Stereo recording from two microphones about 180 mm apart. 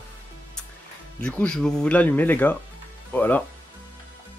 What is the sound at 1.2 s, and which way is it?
Speech, 5° left (ahead or behind).